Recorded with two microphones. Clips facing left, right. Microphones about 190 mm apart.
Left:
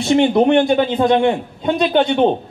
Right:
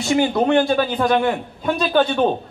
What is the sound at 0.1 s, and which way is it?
A man's voice, 25° left (ahead or behind).